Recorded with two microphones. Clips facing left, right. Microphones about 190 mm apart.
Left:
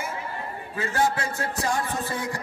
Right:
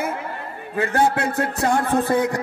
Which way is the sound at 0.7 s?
60° right (ahead or behind).